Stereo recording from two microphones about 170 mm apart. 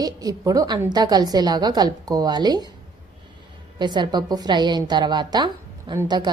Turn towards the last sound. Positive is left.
turn(degrees=-25)  # may be behind; listen again after turning